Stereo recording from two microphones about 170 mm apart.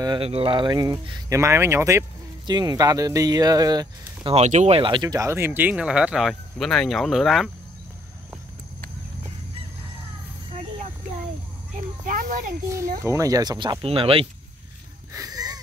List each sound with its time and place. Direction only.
0.0 s speech: 30° right (ahead or behind)
4.4 s speech: 40° right (ahead or behind); by 7.5 s centre (ahead or behind)
12.1 s a sound: 50° right (ahead or behind)
13.0 s speech: 20° right (ahead or behind)
13.8 s speech: 35° right (ahead or behind)
15.1 s a sound: 20° right (ahead or behind)